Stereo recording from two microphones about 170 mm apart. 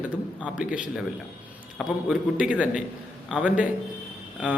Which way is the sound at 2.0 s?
5° right (ahead or behind).